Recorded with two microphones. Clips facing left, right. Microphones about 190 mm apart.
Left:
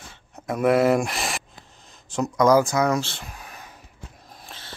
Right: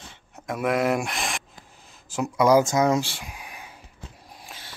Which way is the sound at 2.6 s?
20° right (ahead or behind).